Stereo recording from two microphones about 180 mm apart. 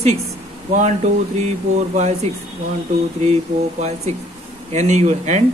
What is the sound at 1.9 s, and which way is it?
Speech, 40° right (ahead or behind).